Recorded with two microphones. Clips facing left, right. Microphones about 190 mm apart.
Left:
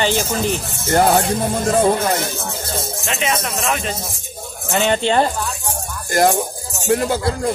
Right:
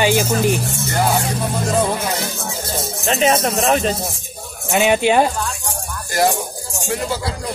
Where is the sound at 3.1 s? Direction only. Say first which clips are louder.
Right 7 dB; 35° right (ahead or behind).